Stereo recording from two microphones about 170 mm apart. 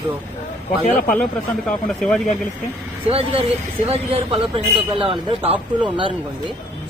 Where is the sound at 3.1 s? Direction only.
35° right (ahead or behind).